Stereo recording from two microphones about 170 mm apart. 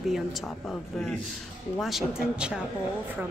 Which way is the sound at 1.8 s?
Centre (ahead or behind).